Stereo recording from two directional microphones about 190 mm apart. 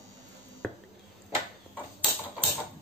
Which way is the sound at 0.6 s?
Centre (ahead or behind).